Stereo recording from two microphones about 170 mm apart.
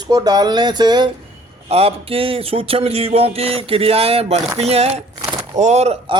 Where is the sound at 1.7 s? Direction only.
35° right (ahead or behind).